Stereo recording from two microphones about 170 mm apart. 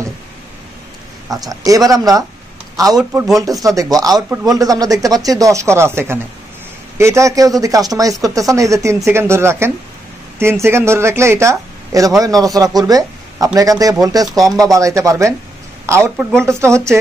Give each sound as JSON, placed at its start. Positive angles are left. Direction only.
{"t": 1.3, "sound": "speech", "side_deg": -20}
{"t": 3.0, "sound": "speech", "side_deg": -5}
{"t": 3.6, "sound": "speech", "side_deg": -20}
{"t": 14.3, "sound": "speech", "side_deg": 0}
{"t": 14.7, "sound": "speech", "side_deg": -20}